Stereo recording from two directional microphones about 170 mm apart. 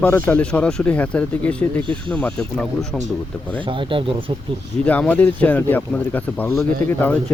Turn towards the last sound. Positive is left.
turn(degrees=10)  # may be behind; listen again after turning